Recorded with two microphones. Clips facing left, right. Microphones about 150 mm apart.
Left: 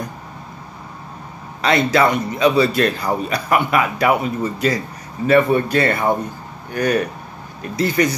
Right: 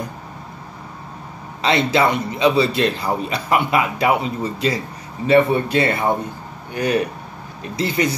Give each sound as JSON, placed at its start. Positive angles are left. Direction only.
{"t": 1.6, "sound": "a man's voice", "side_deg": -25}
{"t": 7.7, "sound": "a man's voice", "side_deg": -25}